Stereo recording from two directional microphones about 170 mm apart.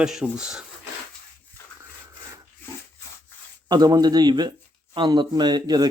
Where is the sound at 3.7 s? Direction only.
25° right (ahead or behind).